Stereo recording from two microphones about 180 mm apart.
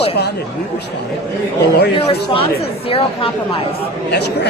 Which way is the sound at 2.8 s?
30° left (ahead or behind).